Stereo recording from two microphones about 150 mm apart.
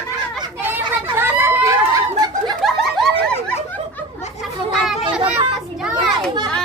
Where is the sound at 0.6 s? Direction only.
15° right (ahead or behind).